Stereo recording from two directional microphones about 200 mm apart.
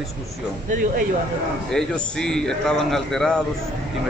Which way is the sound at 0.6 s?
40° right (ahead or behind).